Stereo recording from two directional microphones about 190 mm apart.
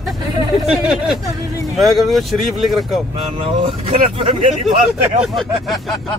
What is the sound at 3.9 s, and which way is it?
Speech, 30° right (ahead or behind).